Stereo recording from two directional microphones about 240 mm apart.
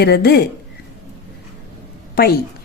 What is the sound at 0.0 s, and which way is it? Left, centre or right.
Speech, left.